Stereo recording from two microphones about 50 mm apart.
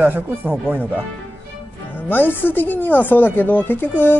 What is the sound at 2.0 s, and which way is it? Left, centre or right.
Speech, left.